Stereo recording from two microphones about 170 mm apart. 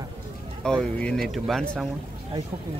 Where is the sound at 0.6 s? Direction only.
5° left (ahead or behind).